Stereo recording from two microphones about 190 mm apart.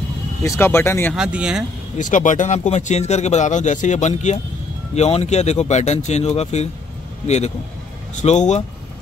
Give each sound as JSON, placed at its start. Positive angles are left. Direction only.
{"t": 0.4, "sound": "speech", "side_deg": 15}
{"t": 1.1, "sound": "speech", "side_deg": -5}
{"t": 2.0, "sound": "speech", "side_deg": 40}